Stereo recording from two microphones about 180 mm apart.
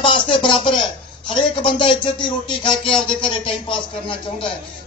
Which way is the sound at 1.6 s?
30° left (ahead or behind).